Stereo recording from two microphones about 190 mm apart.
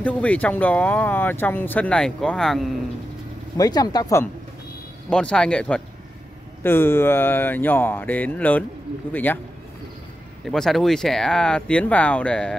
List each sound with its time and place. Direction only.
0.0 s speech: 5° left (ahead or behind)
3.5 s speech: 20° left (ahead or behind)
5.1 s speech: 5° left (ahead or behind)
10.4 s speech: centre (ahead or behind)